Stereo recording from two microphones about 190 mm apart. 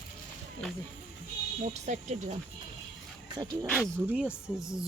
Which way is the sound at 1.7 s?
40° right (ahead or behind).